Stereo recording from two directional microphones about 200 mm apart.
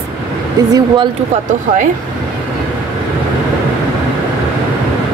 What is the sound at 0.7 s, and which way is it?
Speech, 25° right (ahead or behind).